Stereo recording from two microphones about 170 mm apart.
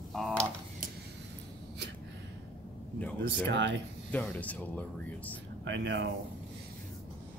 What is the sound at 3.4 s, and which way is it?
Speech, 90° right.